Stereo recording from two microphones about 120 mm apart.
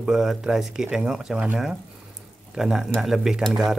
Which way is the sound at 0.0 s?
5° right (ahead or behind).